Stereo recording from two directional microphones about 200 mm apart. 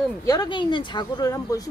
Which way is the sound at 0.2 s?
20° left (ahead or behind).